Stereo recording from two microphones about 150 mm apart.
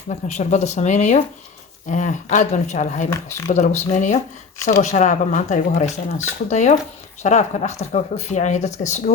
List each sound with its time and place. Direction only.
0.1 s speech: 50° left (ahead or behind)
3.1 s speech: 15° left (ahead or behind)
3.5 s speech: 50° left (ahead or behind)